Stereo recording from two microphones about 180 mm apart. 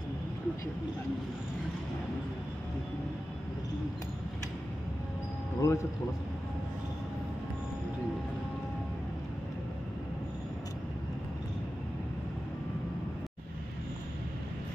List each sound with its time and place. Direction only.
5.6 s speech: 15° left (ahead or behind)